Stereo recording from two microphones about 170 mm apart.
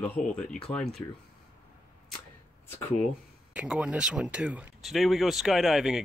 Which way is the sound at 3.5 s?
5° right (ahead or behind).